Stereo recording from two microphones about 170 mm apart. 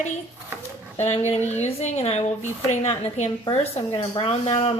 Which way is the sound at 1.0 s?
40° left (ahead or behind).